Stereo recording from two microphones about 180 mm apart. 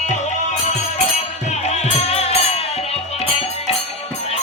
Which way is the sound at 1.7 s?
35° left (ahead or behind).